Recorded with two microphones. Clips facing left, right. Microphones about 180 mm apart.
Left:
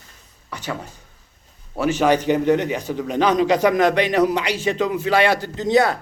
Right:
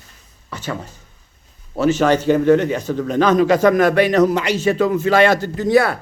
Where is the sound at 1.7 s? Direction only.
15° left (ahead or behind).